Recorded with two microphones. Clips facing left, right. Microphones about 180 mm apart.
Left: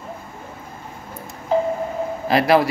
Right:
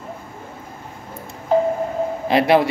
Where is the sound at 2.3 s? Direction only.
20° right (ahead or behind).